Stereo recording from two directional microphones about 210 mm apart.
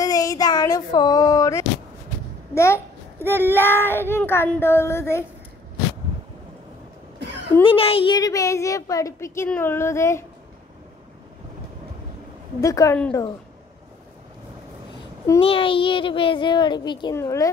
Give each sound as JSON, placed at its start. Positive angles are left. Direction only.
{"t": 0.0, "sound": "child singing", "side_deg": 15}
{"t": 2.5, "sound": "a child's voice", "side_deg": 15}
{"t": 7.6, "sound": "a child's voice", "side_deg": 25}
{"t": 12.5, "sound": "a child's voice", "side_deg": 15}
{"t": 15.4, "sound": "speech", "side_deg": 25}